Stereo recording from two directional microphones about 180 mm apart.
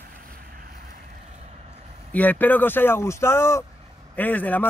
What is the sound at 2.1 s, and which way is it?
Speech, 10° left (ahead or behind).